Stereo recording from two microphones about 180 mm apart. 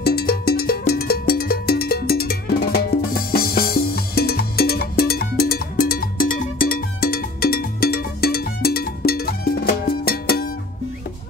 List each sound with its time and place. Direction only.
0.0 s music: 60° left (ahead or behind)